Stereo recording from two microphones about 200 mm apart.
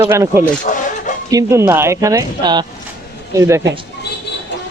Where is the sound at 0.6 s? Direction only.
40° left (ahead or behind).